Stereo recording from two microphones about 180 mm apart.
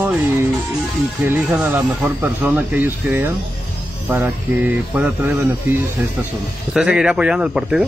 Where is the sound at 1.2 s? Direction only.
5° right (ahead or behind).